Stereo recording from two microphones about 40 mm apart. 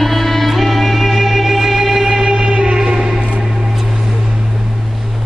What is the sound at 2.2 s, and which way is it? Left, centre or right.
Music, right.